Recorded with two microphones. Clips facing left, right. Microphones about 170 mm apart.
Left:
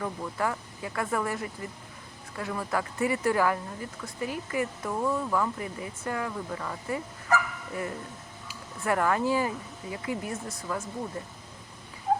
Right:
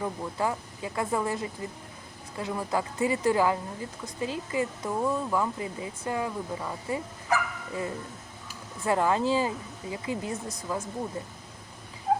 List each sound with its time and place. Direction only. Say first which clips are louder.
0.0 s a woman's voice: right 1 dB; 20° right (ahead or behind)